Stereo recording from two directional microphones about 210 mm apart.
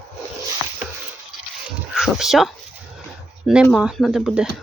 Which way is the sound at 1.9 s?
Centre (ahead or behind).